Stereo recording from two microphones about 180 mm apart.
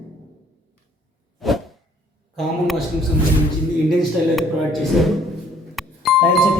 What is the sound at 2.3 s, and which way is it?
Speech, centre (ahead or behind).